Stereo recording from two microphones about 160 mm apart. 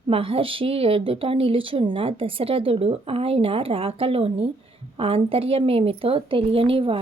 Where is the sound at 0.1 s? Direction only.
35° right (ahead or behind).